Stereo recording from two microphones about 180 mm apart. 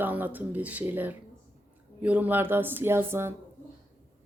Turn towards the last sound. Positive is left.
turn(degrees=-15)  # may be behind; listen again after turning